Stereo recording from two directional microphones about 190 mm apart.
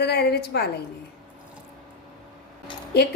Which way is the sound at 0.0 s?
60° left (ahead or behind).